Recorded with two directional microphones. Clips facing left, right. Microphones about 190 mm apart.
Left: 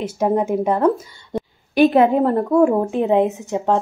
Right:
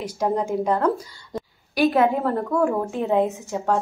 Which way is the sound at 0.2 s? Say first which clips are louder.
Left 4 dB; 20° left (ahead or behind).